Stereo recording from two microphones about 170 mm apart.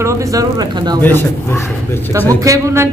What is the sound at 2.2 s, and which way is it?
Speech, 20° right (ahead or behind).